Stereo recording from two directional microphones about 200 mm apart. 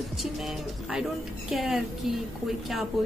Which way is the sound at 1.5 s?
Centre (ahead or behind).